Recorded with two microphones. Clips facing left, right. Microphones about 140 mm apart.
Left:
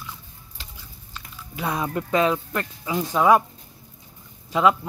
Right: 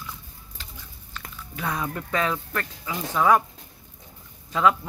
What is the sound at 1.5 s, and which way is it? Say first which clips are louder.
Speech: left 3 dB; 15° left (ahead or behind).